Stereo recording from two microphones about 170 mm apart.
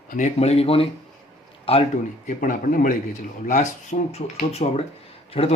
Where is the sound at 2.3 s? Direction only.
50° left (ahead or behind).